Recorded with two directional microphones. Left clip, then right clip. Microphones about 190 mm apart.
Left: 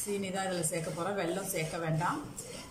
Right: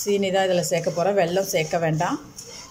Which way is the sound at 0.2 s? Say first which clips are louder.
Right 14 dB; 45° right (ahead or behind).